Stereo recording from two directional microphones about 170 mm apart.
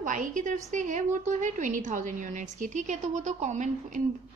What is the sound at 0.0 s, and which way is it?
A woman's voice, 50° right (ahead or behind).